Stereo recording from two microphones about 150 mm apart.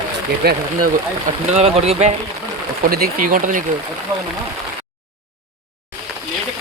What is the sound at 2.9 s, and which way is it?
Speech, 75° right (ahead or behind).